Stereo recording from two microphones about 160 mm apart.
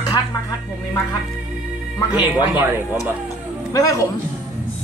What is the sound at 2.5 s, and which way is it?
Speech, 15° right (ahead or behind).